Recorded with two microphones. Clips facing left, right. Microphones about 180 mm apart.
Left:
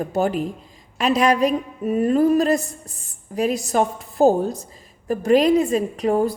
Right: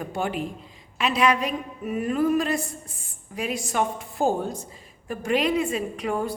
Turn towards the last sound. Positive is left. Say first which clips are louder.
# left 7 dB
turn(degrees=40)  # may be behind; listen again after turning